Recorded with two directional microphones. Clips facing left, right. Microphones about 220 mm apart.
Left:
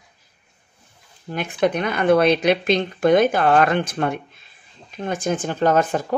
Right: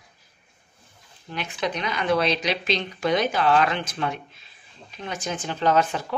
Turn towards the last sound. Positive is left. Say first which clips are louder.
# left 4 dB
turn(degrees=50)  # may be behind; listen again after turning